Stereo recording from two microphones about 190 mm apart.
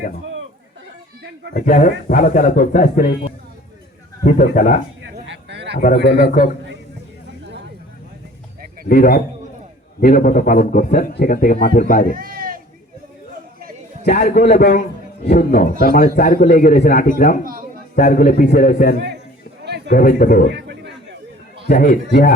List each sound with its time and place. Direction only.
1.5 s speech: 40° left (ahead or behind)
4.2 s a man's voice: 40° left (ahead or behind)
5.1 s a sound: 70° right (ahead or behind)
6.1 s a man's voice: 50° left (ahead or behind)
8.9 s a man's voice: 45° left (ahead or behind)
12.1 s a sound: 50° right (ahead or behind)
14.0 s a man's voice: 40° left (ahead or behind)
17.4 s a man's voice: 50° right (ahead or behind)
17.9 s a man's voice: 45° left (ahead or behind)
19.6 s a sound: 60° right (ahead or behind)
19.9 s a man's voice: 50° left (ahead or behind)
20.5 s a sound: 65° right (ahead or behind)
21.7 s a man's voice: 50° left (ahead or behind)